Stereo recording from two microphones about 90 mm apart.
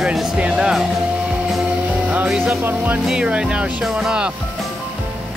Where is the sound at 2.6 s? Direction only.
20° right (ahead or behind).